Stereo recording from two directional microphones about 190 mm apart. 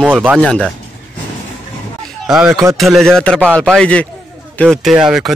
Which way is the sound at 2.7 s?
Centre (ahead or behind).